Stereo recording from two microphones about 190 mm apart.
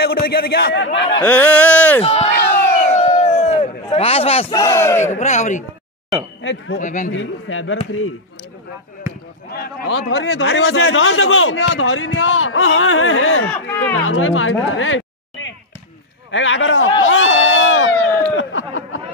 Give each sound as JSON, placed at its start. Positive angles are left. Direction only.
{"t": 0.0, "sound": "a man's voice", "side_deg": 55}
{"t": 1.2, "sound": "speech", "side_deg": 10}
{"t": 2.0, "sound": "speech", "side_deg": 30}
{"t": 2.3, "sound": "crowd", "side_deg": 55}
{"t": 2.9, "sound": "a sound", "side_deg": 35}
{"t": 5.1, "sound": "speech", "side_deg": 40}
{"t": 6.4, "sound": "speech", "side_deg": 75}
{"t": 6.8, "sound": "speech", "side_deg": 40}
{"t": 7.1, "sound": "a man's voice", "side_deg": 90}
{"t": 9.5, "sound": "a man's voice", "side_deg": 55}
{"t": 13.5, "sound": "speech", "side_deg": 10}
{"t": 14.0, "sound": "a man's voice", "side_deg": 90}
{"t": 17.0, "sound": "crowd", "side_deg": 85}
{"t": 18.3, "sound": "a sound", "side_deg": 85}